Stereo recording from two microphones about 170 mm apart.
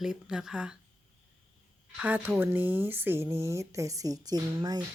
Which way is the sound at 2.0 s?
10° right (ahead or behind).